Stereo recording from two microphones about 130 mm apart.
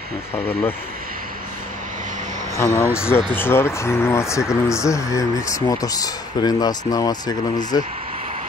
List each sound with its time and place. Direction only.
0.5 s speech: 15° left (ahead or behind)
2.5 s speech: 20° left (ahead or behind)